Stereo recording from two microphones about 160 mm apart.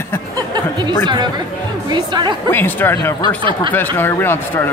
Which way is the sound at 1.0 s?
30° right (ahead or behind).